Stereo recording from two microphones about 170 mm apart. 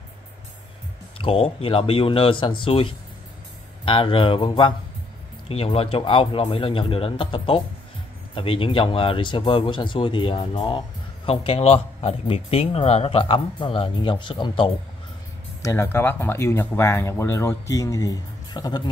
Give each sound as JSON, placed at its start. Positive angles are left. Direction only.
{"t": 1.1, "sound": "speech", "side_deg": 35}
{"t": 15.6, "sound": "speech", "side_deg": 15}